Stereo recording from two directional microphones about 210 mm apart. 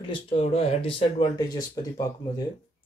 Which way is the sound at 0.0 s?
25° left (ahead or behind).